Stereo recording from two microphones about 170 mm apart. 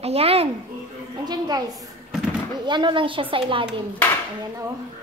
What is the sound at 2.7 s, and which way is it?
A woman's voice, 25° right (ahead or behind).